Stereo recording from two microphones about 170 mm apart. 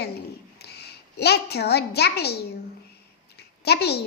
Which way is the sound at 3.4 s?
75° left (ahead or behind).